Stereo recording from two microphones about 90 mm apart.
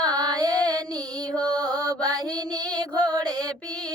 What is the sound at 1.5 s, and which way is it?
Mantra, 45° right (ahead or behind).